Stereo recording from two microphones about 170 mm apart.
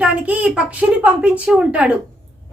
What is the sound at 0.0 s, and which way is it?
A woman's voice, 5° right (ahead or behind).